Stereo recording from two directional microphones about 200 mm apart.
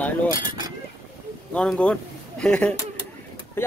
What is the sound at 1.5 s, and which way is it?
Speech, 5° left (ahead or behind).